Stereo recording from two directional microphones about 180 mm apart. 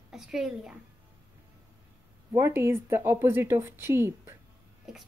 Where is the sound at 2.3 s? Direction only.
15° right (ahead or behind).